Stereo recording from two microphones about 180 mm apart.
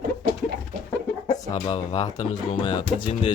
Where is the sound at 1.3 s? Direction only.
25° left (ahead or behind).